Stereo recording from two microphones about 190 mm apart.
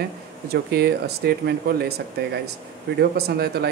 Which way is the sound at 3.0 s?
55° right (ahead or behind).